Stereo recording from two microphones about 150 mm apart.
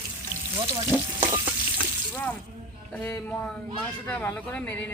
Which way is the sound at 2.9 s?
15° left (ahead or behind).